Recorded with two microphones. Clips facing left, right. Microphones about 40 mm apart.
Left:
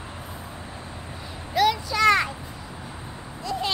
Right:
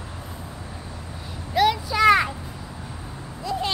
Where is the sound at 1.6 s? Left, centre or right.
Centre.